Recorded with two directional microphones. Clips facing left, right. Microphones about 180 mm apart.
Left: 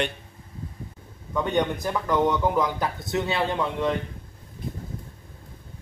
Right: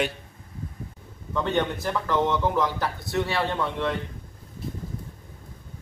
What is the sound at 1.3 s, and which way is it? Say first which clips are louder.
Speech: left 1 dB; 15° left (ahead or behind).